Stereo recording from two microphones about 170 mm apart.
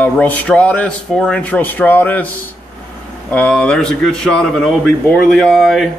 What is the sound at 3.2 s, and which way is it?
A man's voice, 10° left (ahead or behind).